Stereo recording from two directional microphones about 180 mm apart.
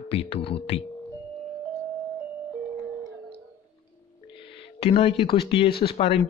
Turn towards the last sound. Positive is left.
turn(degrees=30)  # may be behind; listen again after turning